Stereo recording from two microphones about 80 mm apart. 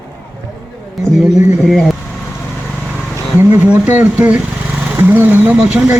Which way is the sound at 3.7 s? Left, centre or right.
Centre.